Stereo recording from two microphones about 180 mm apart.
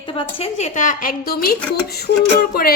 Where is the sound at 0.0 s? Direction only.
30° left (ahead or behind).